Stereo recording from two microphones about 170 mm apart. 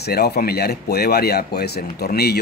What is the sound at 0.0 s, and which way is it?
Speech, 70° left (ahead or behind).